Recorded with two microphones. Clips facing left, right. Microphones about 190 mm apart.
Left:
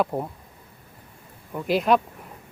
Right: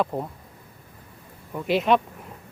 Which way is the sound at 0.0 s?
5° left (ahead or behind).